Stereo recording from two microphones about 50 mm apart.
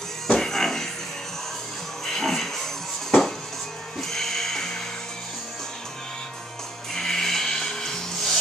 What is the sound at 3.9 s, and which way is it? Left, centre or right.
Music, centre.